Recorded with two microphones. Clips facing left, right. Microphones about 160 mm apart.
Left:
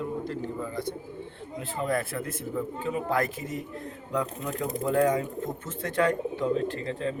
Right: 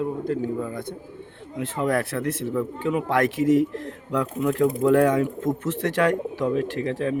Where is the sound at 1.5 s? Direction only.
70° right (ahead or behind); by 3.7 s 90° right.